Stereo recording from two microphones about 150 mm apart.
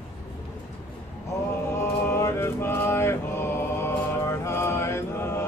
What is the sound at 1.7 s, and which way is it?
Mantra, 15° left (ahead or behind).